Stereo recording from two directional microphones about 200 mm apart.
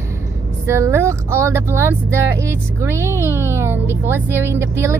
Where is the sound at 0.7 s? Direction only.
15° right (ahead or behind).